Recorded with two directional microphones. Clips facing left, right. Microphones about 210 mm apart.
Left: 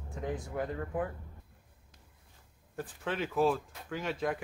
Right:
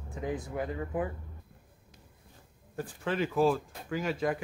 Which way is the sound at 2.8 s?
Centre (ahead or behind).